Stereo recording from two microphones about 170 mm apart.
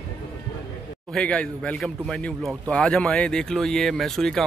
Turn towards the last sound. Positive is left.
turn(degrees=0)  # may be behind; listen again after turning